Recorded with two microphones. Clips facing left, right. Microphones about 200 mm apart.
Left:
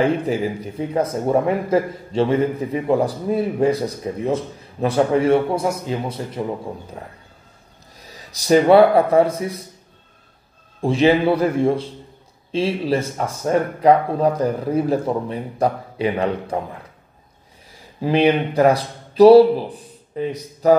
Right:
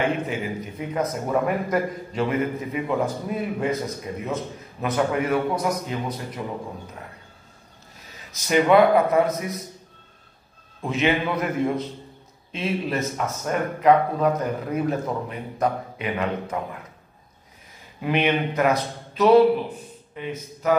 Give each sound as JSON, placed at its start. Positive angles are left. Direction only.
{"t": 0.0, "sound": "a man's voice", "side_deg": 35}
{"t": 10.8, "sound": "a man's voice", "side_deg": 30}
{"t": 18.0, "sound": "a man's voice", "side_deg": 30}